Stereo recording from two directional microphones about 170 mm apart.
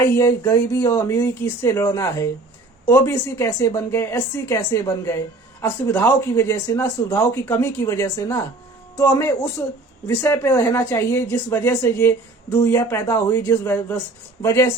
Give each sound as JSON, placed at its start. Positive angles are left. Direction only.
{"t": 0.0, "sound": "speech", "side_deg": 15}